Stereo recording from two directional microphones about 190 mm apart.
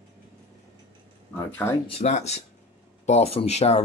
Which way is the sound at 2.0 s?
35° left (ahead or behind).